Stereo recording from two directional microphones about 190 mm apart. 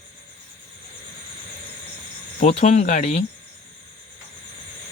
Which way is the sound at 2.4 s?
40° left (ahead or behind).